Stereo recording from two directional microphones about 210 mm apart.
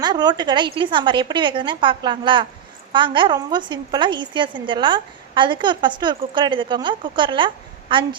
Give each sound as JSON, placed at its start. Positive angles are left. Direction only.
{"t": 0.0, "sound": "a woman's voice", "side_deg": -20}